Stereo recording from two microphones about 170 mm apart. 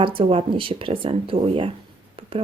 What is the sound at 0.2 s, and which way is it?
A woman's voice, 30° right (ahead or behind).